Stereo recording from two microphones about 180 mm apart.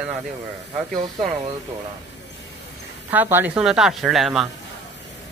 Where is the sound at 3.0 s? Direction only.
10° right (ahead or behind).